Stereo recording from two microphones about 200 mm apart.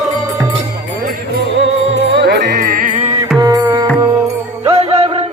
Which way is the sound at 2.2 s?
55° right (ahead or behind).